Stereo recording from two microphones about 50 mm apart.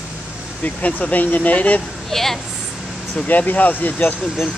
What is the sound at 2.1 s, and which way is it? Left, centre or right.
Speech, centre.